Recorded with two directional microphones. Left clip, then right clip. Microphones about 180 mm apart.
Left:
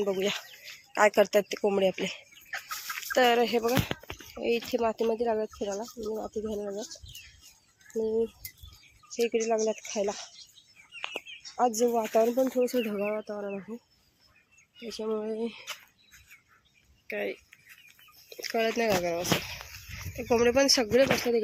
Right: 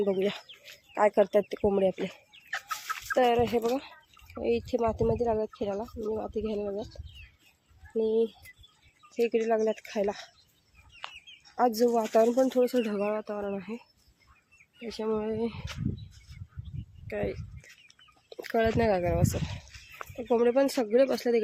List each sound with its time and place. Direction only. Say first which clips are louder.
0.0 s speech: right 1 dB; 15° right (ahead or behind)
0.6 s speech: left 1 dB; centre (ahead or behind)
7.9 s speech: right 2 dB; 10° right (ahead or behind)
11.6 s speech: right 1 dB; 10° right (ahead or behind)
12.6 s speech: right 1 dB; 5° right (ahead or behind)
14.8 s speech: right 1 dB; 10° right (ahead or behind)
17.1 s speech: even; 5° right (ahead or behind)
18.3 s speech: right 1 dB; 15° right (ahead or behind); by 21.4 s centre (ahead or behind)